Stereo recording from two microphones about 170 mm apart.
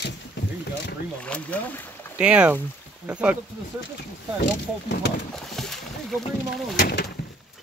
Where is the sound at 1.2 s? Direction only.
10° left (ahead or behind).